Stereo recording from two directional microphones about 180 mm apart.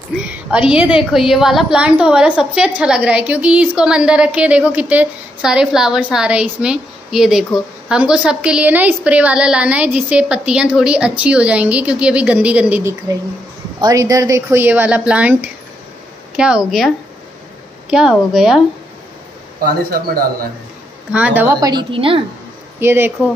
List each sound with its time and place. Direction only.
0.2 s a woman's voice: 10° right (ahead or behind)
13.7 s a woman's voice: 20° right (ahead or behind)
16.3 s a woman's voice: 5° right (ahead or behind)
21.1 s a woman's voice: 10° right (ahead or behind)
21.5 s a woman's voice: 25° right (ahead or behind)
22.8 s a woman's voice: 10° right (ahead or behind)